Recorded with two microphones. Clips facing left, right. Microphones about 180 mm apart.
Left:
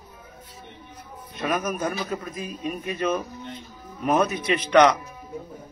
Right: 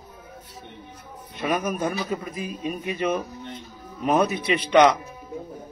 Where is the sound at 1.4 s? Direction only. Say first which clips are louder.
Right 1 dB; 10° right (ahead or behind).